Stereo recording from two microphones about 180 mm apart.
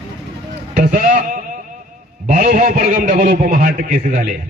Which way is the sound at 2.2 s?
45° right (ahead or behind).